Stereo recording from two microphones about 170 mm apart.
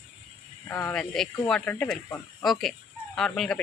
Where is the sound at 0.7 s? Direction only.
15° left (ahead or behind).